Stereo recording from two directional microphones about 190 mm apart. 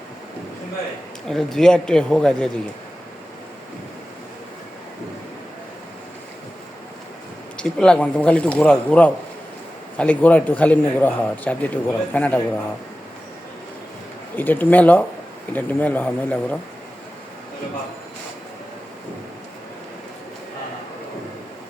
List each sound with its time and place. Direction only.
1.3 s speech: centre (ahead or behind)
7.5 s a man's voice: 5° left (ahead or behind)
14.3 s a man's voice: 10° left (ahead or behind)